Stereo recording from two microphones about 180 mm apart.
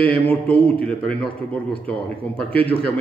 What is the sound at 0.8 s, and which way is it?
A man's voice, 5° left (ahead or behind).